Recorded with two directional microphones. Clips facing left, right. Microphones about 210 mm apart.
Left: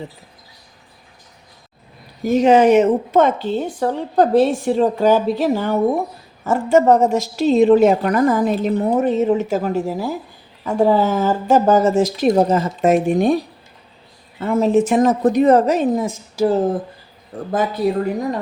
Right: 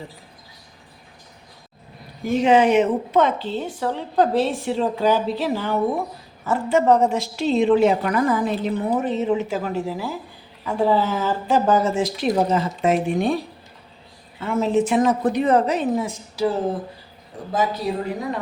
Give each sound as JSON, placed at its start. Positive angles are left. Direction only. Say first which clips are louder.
{"t": 2.2, "sound": "a woman's voice", "louder": "left 4 dB", "side_deg": 40}